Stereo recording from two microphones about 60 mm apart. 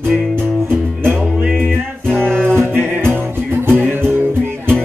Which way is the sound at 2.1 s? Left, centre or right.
Right.